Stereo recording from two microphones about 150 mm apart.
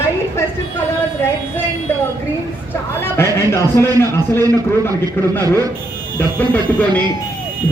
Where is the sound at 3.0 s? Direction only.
15° left (ahead or behind).